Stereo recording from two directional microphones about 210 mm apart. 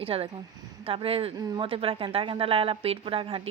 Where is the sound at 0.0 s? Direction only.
25° right (ahead or behind).